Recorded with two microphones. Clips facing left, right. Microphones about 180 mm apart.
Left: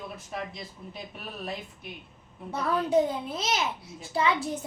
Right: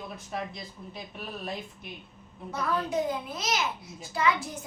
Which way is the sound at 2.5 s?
30° left (ahead or behind).